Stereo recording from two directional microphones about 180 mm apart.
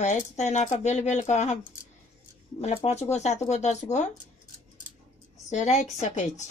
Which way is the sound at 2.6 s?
35° left (ahead or behind).